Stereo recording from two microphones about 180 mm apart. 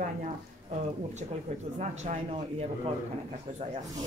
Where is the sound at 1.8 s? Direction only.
40° right (ahead or behind).